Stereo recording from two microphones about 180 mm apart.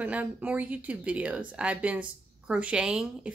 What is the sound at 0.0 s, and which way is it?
Speech, 10° right (ahead or behind).